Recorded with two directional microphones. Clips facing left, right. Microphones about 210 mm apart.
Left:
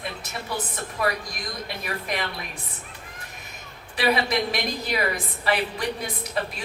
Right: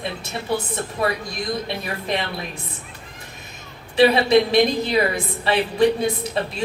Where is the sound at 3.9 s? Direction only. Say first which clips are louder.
Right 9 dB; 25° right (ahead or behind).